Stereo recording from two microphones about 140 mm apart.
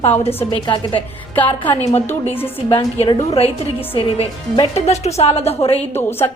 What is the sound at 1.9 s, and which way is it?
Speech, 15° left (ahead or behind).